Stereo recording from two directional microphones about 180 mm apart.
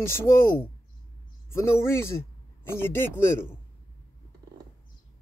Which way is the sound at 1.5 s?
15° left (ahead or behind).